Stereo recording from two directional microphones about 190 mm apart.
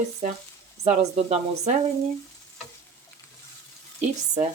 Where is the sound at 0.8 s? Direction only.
35° right (ahead or behind).